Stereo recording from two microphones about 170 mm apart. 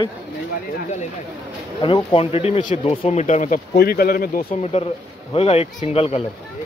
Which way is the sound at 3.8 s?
65° left (ahead or behind).